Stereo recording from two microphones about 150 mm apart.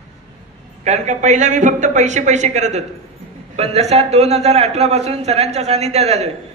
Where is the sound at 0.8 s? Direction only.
50° right (ahead or behind).